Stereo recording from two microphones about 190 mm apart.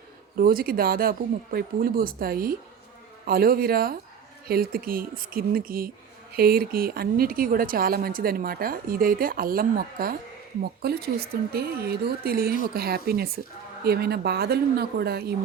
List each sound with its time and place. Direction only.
0.3 s a woman's voice: 50° right (ahead or behind)